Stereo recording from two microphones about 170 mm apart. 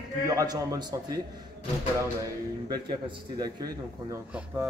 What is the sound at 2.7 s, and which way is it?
A man's voice, 25° right (ahead or behind).